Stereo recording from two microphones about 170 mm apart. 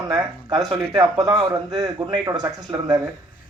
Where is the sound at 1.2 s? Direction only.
20° right (ahead or behind).